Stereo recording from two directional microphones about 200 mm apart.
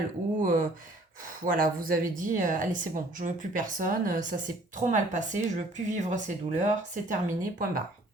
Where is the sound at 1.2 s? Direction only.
45° right (ahead or behind).